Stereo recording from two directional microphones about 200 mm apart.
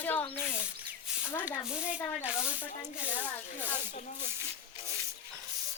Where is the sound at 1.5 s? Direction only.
5° right (ahead or behind).